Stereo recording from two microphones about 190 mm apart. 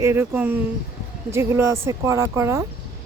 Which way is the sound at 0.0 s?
10° right (ahead or behind).